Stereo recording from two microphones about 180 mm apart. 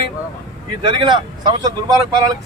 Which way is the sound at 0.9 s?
25° right (ahead or behind).